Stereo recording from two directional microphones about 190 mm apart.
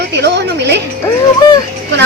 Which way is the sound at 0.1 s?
65° right (ahead or behind).